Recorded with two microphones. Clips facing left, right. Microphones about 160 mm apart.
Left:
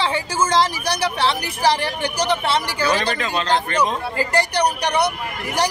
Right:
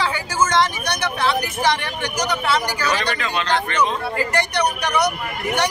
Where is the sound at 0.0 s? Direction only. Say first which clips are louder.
Even; 30° left (ahead or behind).